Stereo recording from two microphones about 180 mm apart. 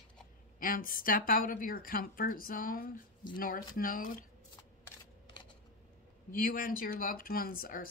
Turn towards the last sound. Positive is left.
turn(degrees=50)  # may be behind; listen again after turning